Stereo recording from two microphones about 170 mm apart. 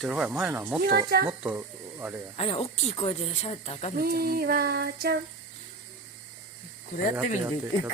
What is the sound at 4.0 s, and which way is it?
Female singing, 65° right (ahead or behind).